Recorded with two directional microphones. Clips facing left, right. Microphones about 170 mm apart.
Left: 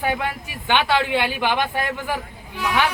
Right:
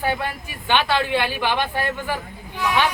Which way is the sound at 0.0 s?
15° left (ahead or behind).